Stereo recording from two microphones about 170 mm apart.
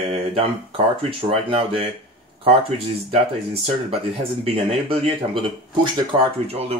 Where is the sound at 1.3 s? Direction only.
30° right (ahead or behind).